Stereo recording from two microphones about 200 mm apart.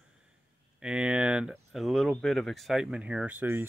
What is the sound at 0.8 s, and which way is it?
Speech, 5° right (ahead or behind).